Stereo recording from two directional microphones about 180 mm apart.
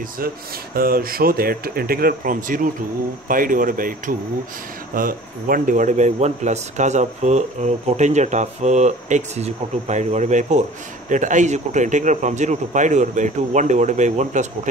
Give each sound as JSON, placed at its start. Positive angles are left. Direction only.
{"t": 0.7, "sound": "a man's voice", "side_deg": -55}